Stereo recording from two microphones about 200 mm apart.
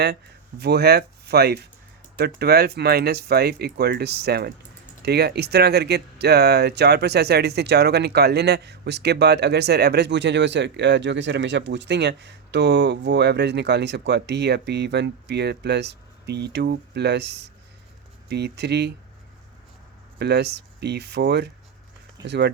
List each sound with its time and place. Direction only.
0.6 s speech: 55° right (ahead or behind)
20.1 s speech: 55° right (ahead or behind)